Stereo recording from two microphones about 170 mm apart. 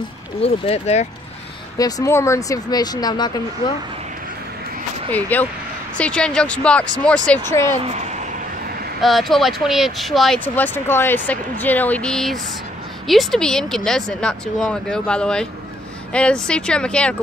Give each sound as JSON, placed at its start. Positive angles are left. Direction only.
{"t": 0.4, "sound": "speech", "side_deg": 40}
{"t": 1.8, "sound": "speech", "side_deg": 20}
{"t": 5.1, "sound": "speech", "side_deg": 10}
{"t": 7.8, "sound": "speech", "side_deg": -40}
{"t": 9.0, "sound": "speech", "side_deg": 0}